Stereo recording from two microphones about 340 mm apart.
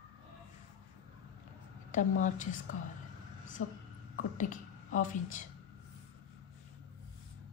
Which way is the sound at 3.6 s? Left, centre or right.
Left.